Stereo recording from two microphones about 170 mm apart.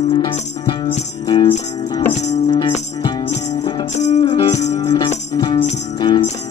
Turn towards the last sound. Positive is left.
turn(degrees=25)  # may be behind; listen again after turning